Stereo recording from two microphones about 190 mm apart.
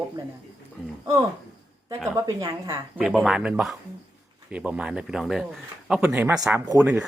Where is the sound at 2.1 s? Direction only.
20° right (ahead or behind).